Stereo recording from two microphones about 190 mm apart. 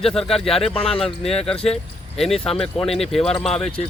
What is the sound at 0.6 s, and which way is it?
Speech, 30° left (ahead or behind).